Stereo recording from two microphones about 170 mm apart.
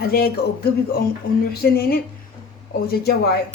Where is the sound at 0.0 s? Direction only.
65° left (ahead or behind).